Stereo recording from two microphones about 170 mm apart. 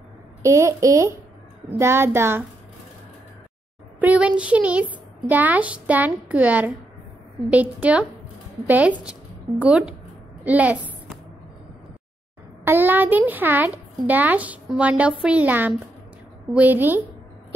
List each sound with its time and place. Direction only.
0.4 s a child's voice: 15° right (ahead or behind)
4.0 s a child's voice: 10° right (ahead or behind)
12.6 s a child's voice: 10° right (ahead or behind)